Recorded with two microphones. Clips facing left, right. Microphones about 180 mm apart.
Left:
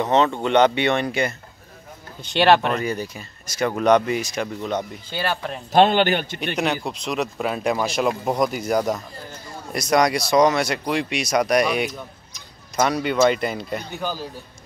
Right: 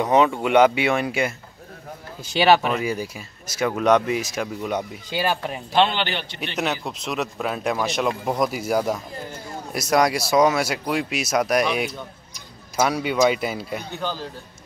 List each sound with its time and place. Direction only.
0.0 s speech: 10° right (ahead or behind)
5.7 s a man's voice: 45° left (ahead or behind)
6.5 s speech: centre (ahead or behind)
13.9 s a man's voice: 10° left (ahead or behind)